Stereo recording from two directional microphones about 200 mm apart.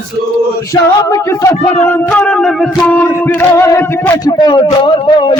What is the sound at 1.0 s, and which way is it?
Speech, 15° left (ahead or behind).